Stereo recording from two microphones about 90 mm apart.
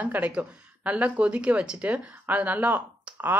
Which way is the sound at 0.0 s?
15° right (ahead or behind).